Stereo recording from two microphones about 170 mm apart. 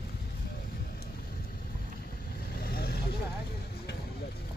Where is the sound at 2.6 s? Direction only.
65° left (ahead or behind).